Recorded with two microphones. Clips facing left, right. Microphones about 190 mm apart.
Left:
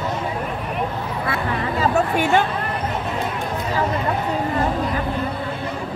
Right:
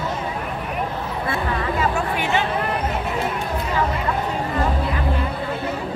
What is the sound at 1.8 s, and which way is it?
Speech, 45° left (ahead or behind).